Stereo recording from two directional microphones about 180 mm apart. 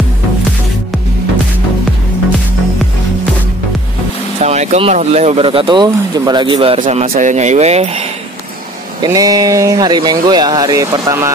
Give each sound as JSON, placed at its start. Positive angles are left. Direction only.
{"t": 4.4, "sound": "speech", "side_deg": -35}
{"t": 6.8, "sound": "speech", "side_deg": -40}
{"t": 9.0, "sound": "speech", "side_deg": -20}